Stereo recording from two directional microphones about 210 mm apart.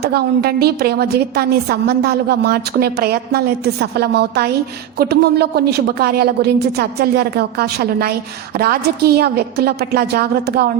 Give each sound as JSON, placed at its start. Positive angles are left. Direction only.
{"t": 0.0, "sound": "a woman's voice", "side_deg": -50}